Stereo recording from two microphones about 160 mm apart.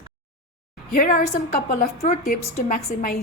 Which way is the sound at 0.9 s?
60° left (ahead or behind).